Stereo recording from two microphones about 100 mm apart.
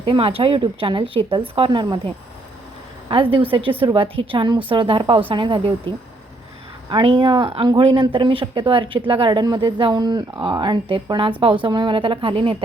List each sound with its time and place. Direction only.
0.0 s speech: 60° right (ahead or behind)
3.3 s speech: 60° right (ahead or behind)
6.9 s speech: 60° right (ahead or behind)
9.4 s speech: 45° right (ahead or behind); by 12.6 s 65° right (ahead or behind)